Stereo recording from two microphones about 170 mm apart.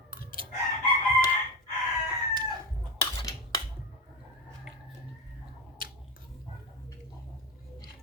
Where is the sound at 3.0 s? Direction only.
25° left (ahead or behind).